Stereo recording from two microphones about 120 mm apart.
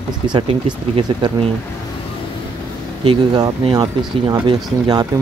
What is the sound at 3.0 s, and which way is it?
Speech, 45° right (ahead or behind).